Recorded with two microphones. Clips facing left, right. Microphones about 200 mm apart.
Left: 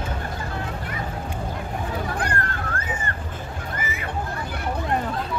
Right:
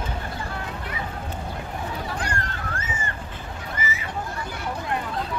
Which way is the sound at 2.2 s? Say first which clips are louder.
Left 3 dB; 55° left (ahead or behind).